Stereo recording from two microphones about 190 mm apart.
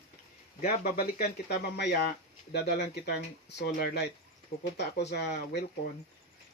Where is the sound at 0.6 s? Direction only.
55° left (ahead or behind).